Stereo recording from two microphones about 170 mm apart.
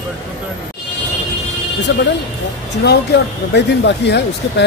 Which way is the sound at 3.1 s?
90° left.